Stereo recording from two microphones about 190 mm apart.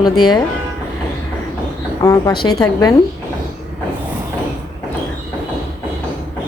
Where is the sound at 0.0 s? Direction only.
20° left (ahead or behind).